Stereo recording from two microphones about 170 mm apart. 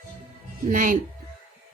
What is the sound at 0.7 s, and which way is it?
Speech, 50° right (ahead or behind).